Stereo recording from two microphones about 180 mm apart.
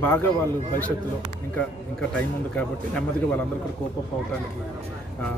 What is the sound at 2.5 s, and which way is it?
Speech, 5° left (ahead or behind).